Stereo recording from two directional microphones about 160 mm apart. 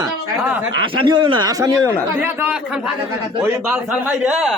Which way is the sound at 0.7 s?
30° right (ahead or behind).